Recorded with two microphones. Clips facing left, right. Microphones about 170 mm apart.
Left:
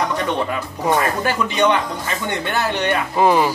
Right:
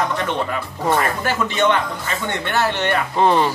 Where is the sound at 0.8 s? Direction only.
15° left (ahead or behind).